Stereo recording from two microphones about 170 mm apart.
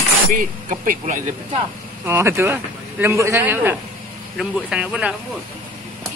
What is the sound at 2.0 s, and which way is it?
Speech, 15° right (ahead or behind).